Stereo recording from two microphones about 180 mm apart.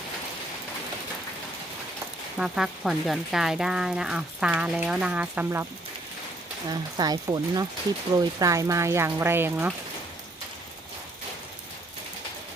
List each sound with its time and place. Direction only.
2.4 s speech: centre (ahead or behind)
6.7 s speech: 20° right (ahead or behind)